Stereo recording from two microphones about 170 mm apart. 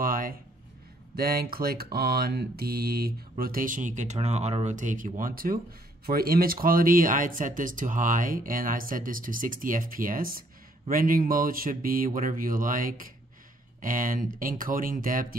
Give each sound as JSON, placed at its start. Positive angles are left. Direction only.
{"t": 0.0, "sound": "a sound", "side_deg": -55}
{"t": 1.1, "sound": "mantra", "side_deg": -65}
{"t": 13.7, "sound": "speech", "side_deg": -55}